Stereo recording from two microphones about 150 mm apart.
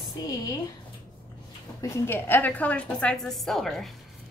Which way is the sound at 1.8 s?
15° left (ahead or behind).